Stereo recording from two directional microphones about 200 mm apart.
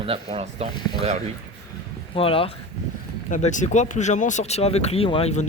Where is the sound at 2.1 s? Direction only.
25° left (ahead or behind).